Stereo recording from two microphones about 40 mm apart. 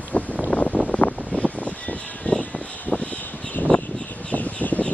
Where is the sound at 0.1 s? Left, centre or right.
Left.